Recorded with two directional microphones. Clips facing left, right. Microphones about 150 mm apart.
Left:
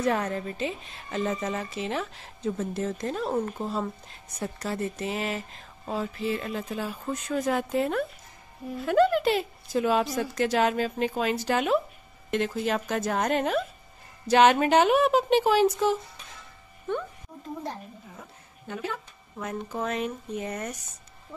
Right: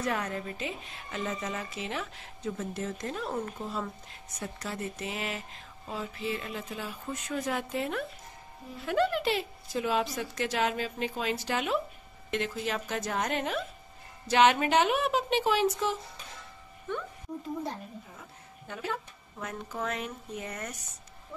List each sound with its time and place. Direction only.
0.0 s a woman's voice: 30° left (ahead or behind)
19.7 s speech: 25° left (ahead or behind)